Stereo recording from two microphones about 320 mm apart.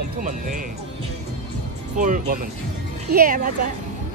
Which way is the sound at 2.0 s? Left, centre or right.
Right.